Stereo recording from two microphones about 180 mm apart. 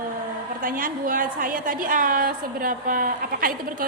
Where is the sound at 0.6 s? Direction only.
50° right (ahead or behind).